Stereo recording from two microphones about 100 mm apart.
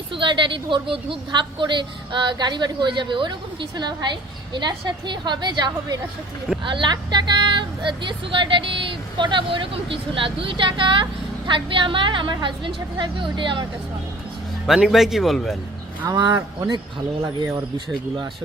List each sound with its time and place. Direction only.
0.1 s a woman's voice: 55° right (ahead or behind)
14.7 s speech: 5° right (ahead or behind)
16.0 s a woman's voice: 45° right (ahead or behind)